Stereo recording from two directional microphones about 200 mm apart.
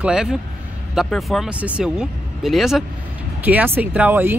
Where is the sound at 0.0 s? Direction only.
5° right (ahead or behind).